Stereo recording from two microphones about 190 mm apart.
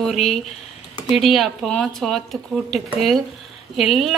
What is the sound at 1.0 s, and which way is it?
Speech, centre (ahead or behind).